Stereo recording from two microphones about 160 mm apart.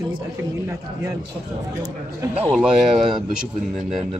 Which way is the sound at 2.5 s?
5° right (ahead or behind).